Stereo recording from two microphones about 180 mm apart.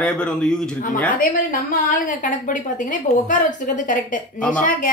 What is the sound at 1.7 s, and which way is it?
A woman's voice, 50° left (ahead or behind).